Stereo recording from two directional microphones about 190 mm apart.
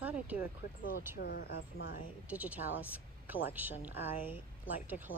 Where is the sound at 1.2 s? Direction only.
55° left (ahead or behind).